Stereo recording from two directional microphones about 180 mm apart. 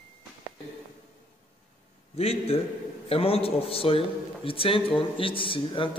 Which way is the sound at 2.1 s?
35° left (ahead or behind).